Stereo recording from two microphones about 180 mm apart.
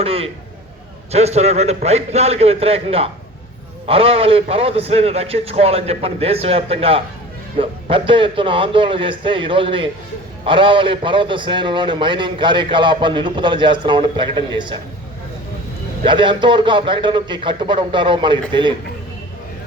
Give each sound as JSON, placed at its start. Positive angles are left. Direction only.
{"t": 0.0, "sound": "a man's voice", "side_deg": -35}
{"t": 16.0, "sound": "a man's voice", "side_deg": -25}